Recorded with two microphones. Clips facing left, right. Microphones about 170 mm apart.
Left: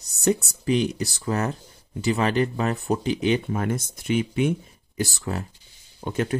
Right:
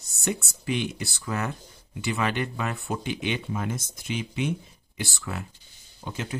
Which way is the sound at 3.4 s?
55° left (ahead or behind).